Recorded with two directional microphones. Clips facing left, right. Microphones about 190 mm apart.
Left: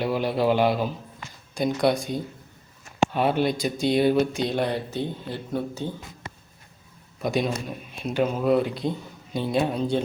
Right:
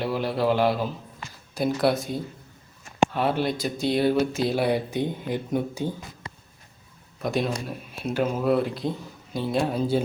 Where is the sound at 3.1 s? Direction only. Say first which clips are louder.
Left 2 dB; 20° left (ahead or behind).